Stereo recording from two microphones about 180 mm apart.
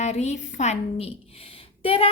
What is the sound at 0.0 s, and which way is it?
A woman's voice, 40° left (ahead or behind).